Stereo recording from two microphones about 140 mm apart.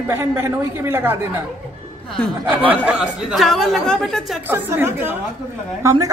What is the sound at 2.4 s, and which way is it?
Speech, 10° right (ahead or behind).